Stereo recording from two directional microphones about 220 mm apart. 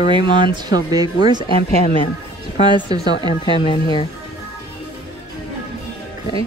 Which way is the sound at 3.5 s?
20° left (ahead or behind).